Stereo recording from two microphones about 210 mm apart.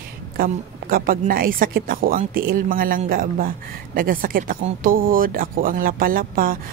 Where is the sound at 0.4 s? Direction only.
45° right (ahead or behind).